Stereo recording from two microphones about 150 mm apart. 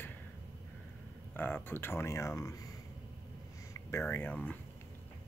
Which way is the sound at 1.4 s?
15° left (ahead or behind).